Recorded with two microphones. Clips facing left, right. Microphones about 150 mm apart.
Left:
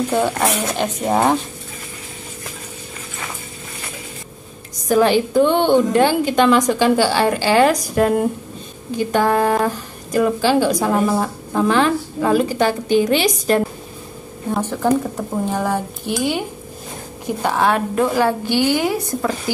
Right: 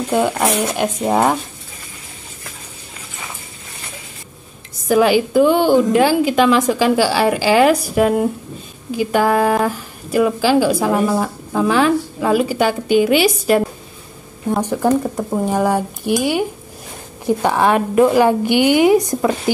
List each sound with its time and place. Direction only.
0.1 s speech: 10° right (ahead or behind)
4.8 s speech: 10° right (ahead or behind)